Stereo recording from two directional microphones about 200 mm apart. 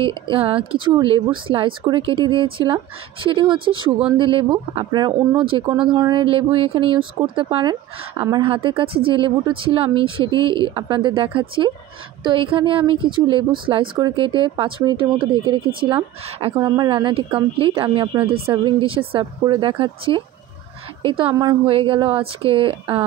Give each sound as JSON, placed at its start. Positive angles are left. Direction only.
{"t": 0.3, "sound": "a woman's voice", "side_deg": -25}